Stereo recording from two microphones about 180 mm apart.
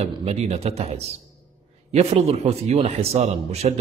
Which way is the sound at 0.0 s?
35° right (ahead or behind).